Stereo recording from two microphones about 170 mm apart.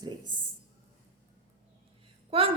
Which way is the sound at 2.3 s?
35° right (ahead or behind).